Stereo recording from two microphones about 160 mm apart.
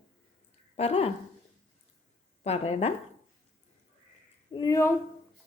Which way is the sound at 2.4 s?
40° left (ahead or behind).